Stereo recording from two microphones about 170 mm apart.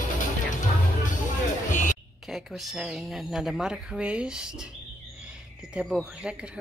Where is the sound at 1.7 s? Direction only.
50° left (ahead or behind).